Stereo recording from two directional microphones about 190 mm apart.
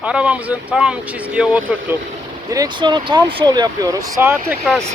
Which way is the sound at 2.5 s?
20° right (ahead or behind).